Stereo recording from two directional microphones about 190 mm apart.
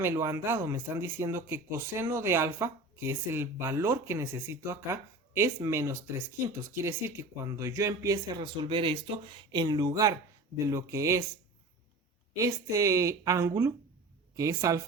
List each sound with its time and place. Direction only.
0.0 s speech: 15° right (ahead or behind)
12.4 s speech: 15° right (ahead or behind)